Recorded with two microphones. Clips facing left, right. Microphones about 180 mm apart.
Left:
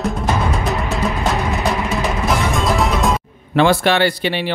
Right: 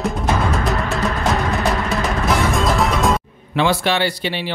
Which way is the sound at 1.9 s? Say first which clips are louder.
Even; centre (ahead or behind).